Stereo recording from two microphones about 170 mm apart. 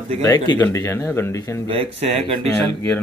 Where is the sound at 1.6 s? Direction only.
35° right (ahead or behind).